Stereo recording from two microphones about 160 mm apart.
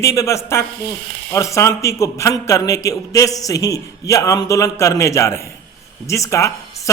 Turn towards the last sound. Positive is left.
turn(degrees=20)  # may be behind; listen again after turning